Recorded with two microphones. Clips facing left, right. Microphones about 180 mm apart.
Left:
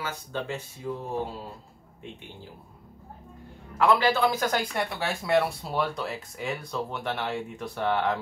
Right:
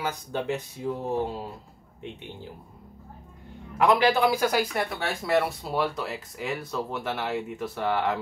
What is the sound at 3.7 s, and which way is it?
Speech, 15° right (ahead or behind).